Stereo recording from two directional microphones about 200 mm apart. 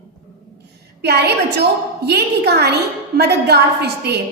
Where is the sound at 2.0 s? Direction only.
55° right (ahead or behind).